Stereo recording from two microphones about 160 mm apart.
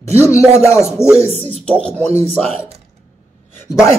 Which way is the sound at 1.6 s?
5° left (ahead or behind).